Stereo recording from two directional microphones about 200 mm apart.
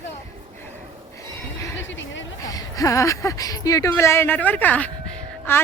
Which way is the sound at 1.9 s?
70° left (ahead or behind).